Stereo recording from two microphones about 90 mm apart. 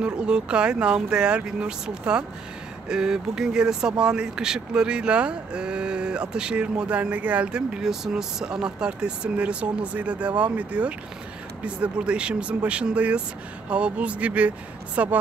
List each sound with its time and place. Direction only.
0.0 s speech: 10° right (ahead or behind)